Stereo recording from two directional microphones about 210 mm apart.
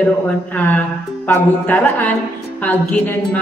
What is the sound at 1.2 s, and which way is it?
Speech, 5° left (ahead or behind).